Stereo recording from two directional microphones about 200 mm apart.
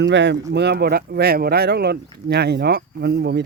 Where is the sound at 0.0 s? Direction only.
60° right (ahead or behind).